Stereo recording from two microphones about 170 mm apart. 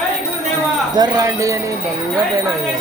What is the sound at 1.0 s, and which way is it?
Speech, 20° right (ahead or behind).